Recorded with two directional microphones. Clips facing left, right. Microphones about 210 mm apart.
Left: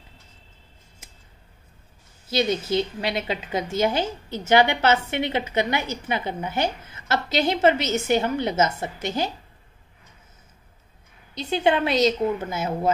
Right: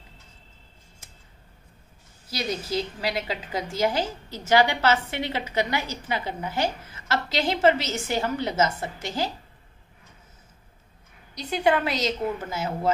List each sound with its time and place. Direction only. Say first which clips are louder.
2.2 s a woman's voice: left 7 dB; 25° left (ahead or behind)
11.3 s a woman's voice: left 1 dB; 25° left (ahead or behind)